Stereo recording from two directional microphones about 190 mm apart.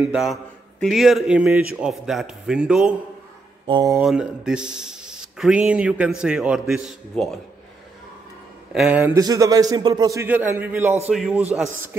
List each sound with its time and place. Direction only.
0.0 s speech: 5° right (ahead or behind)
3.6 s speech: 25° right (ahead or behind)
4.0 s speech: 5° right (ahead or behind)
8.7 s a man's voice: 5° right (ahead or behind)
9.2 s a man's voice: 20° right (ahead or behind); by 11.4 s 5° right (ahead or behind)